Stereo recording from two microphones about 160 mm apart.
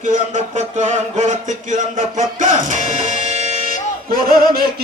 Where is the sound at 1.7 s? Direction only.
50° right (ahead or behind).